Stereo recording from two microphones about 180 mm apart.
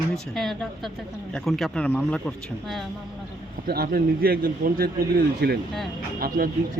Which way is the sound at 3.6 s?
60° right (ahead or behind).